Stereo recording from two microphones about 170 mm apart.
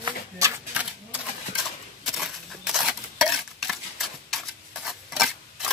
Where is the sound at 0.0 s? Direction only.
20° right (ahead or behind).